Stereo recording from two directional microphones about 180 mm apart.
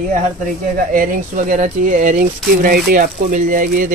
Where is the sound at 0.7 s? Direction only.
50° right (ahead or behind).